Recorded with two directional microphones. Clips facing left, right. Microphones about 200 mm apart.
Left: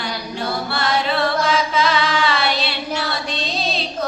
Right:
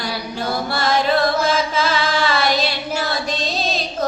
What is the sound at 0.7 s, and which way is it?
Chant, 45° right (ahead or behind).